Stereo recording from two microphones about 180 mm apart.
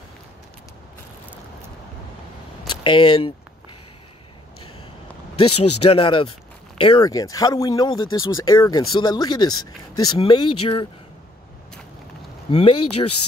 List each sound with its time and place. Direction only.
2.7 s speech: 25° left (ahead or behind)
5.4 s speech: 30° left (ahead or behind)
12.4 s speech: 30° left (ahead or behind)